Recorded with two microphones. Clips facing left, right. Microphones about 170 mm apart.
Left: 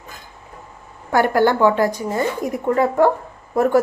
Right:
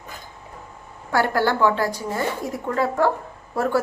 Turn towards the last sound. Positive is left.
turn(degrees=15)  # may be behind; listen again after turning